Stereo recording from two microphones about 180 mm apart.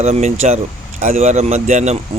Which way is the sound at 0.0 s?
40° right (ahead or behind).